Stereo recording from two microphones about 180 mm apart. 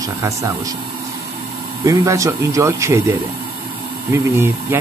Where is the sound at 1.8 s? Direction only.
20° right (ahead or behind).